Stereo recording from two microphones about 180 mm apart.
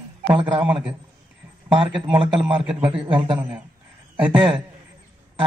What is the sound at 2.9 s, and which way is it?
Speech, 25° right (ahead or behind).